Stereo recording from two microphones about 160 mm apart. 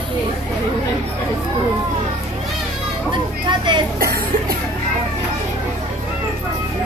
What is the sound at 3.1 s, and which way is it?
Children playing, 30° right (ahead or behind).